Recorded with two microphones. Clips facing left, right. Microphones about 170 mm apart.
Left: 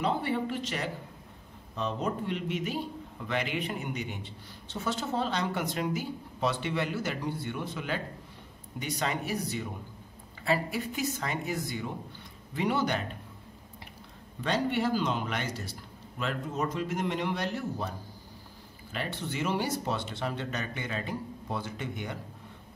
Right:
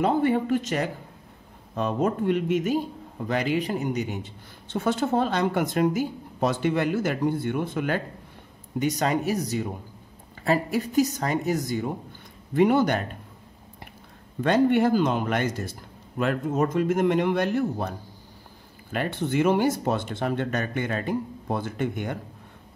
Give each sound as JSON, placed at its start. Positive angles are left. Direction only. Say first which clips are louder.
{"t": 0.0, "sound": "a man's voice", "louder": "right 7 dB", "side_deg": -50}
{"t": 14.4, "sound": "a man's voice", "louder": "right 9 dB", "side_deg": -50}